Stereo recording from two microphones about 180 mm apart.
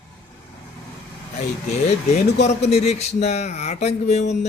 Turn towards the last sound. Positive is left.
turn(degrees=40)  # may be behind; listen again after turning